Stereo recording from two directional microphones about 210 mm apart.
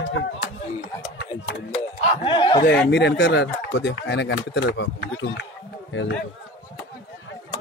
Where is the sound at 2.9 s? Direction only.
55° left (ahead or behind).